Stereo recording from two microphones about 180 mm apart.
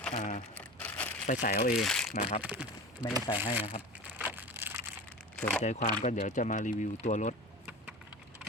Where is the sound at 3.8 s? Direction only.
10° right (ahead or behind).